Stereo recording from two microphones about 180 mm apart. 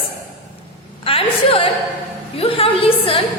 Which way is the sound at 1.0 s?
30° left (ahead or behind).